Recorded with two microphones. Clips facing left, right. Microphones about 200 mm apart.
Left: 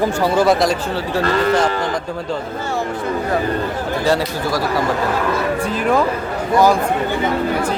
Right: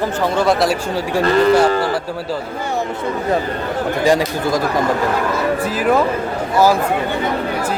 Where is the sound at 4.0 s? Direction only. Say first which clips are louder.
Right 3 dB; 15° right (ahead or behind).